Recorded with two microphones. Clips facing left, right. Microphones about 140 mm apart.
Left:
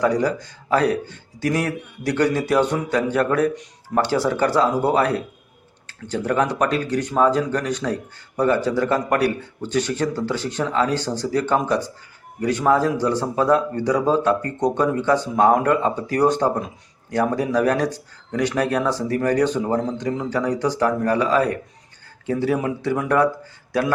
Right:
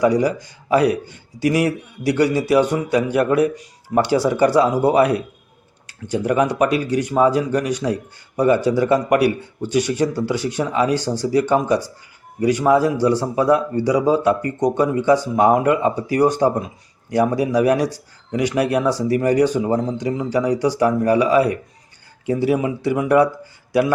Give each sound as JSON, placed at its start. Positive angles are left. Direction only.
{"t": 0.0, "sound": "speech", "side_deg": -10}